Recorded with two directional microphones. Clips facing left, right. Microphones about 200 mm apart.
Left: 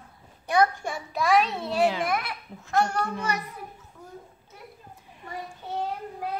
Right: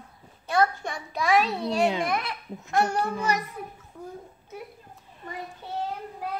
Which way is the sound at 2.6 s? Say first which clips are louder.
Even; 15° right (ahead or behind).